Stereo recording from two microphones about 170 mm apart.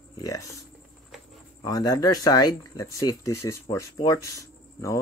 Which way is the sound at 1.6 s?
20° left (ahead or behind).